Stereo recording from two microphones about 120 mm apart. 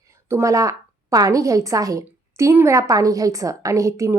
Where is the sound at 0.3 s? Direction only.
25° right (ahead or behind).